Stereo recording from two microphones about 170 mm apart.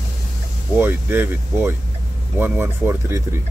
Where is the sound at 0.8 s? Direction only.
10° right (ahead or behind).